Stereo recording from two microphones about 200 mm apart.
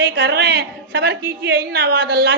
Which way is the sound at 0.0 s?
55° right (ahead or behind).